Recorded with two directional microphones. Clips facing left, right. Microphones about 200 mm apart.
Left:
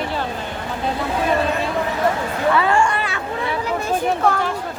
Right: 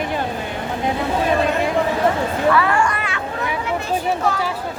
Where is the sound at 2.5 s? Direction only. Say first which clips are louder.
Left 1 dB; 25° left (ahead or behind).